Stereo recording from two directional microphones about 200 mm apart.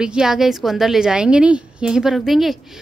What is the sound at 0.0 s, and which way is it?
A woman's voice, 5° right (ahead or behind).